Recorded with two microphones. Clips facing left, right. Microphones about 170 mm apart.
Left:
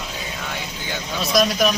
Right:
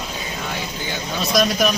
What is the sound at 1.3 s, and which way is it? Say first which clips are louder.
Speech: even; centre (ahead or behind).